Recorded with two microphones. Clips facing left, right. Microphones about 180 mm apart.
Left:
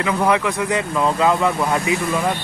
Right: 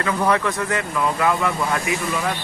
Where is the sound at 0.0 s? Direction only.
10° left (ahead or behind).